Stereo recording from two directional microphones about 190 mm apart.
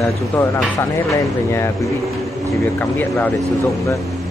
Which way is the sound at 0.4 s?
15° left (ahead or behind).